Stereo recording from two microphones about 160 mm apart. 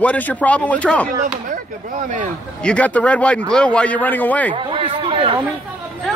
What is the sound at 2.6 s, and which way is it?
Speech, 10° left (ahead or behind).